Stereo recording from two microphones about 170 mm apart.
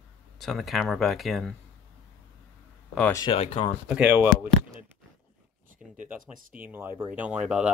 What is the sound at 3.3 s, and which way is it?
Speech, 35° left (ahead or behind).